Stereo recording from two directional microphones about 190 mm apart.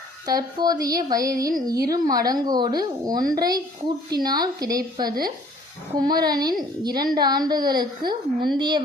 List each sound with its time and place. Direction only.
0.3 s a woman's voice: 20° right (ahead or behind)